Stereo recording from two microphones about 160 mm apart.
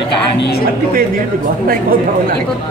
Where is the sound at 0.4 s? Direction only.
80° left.